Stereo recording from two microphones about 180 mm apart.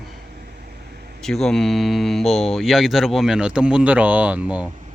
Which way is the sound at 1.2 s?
Centre (ahead or behind).